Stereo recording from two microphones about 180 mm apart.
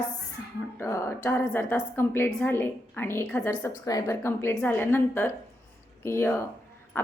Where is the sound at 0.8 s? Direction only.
15° left (ahead or behind).